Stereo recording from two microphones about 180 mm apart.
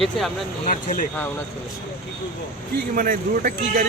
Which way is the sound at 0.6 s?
50° left (ahead or behind).